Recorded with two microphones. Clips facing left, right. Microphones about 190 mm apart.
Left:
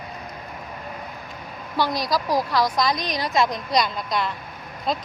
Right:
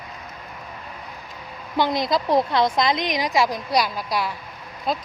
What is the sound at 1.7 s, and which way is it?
A woman's voice, 20° right (ahead or behind).